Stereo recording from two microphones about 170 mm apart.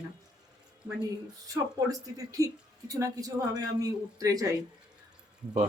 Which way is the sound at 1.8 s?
20° right (ahead or behind).